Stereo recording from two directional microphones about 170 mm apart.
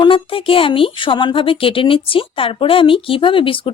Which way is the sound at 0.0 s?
30° left (ahead or behind).